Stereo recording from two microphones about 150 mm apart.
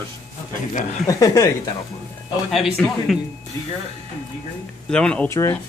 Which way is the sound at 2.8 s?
5° left (ahead or behind).